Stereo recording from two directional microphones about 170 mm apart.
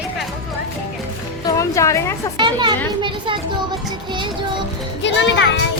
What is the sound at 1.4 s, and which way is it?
Speech, 20° left (ahead or behind).